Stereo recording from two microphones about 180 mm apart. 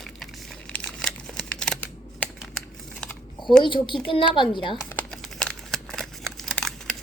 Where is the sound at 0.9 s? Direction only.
5° left (ahead or behind).